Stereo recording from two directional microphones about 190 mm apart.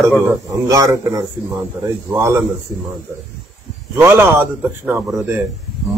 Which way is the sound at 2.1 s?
15° right (ahead or behind).